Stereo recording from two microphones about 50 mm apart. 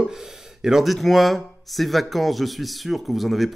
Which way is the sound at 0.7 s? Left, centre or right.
Centre.